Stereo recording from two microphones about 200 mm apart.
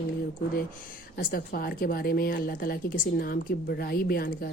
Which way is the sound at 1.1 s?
45° left (ahead or behind).